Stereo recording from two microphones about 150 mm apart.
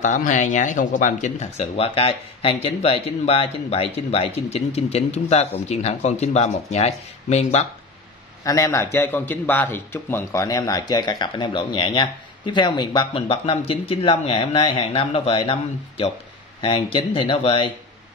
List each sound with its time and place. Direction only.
0.0 s speech: 55° left (ahead or behind)
8.5 s a man's voice: 20° left (ahead or behind); by 15.5 s 40° left (ahead or behind)
16.6 s speech: 35° left (ahead or behind)